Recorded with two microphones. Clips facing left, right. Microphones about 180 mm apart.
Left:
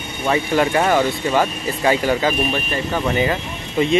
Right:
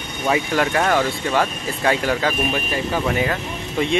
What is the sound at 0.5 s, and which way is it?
Speech, 5° left (ahead or behind).